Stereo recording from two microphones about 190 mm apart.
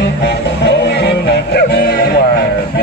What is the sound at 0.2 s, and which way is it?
Music, 60° left (ahead or behind).